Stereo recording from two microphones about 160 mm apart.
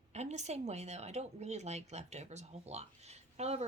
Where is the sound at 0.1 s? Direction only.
45° right (ahead or behind).